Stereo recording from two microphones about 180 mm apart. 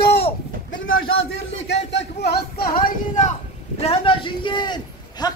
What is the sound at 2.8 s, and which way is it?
Speech, 45° left (ahead or behind).